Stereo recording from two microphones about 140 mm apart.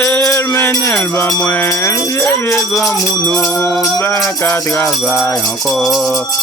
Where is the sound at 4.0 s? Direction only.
20° left (ahead or behind).